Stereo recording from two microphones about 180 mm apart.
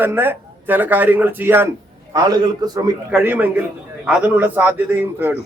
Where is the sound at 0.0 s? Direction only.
10° right (ahead or behind).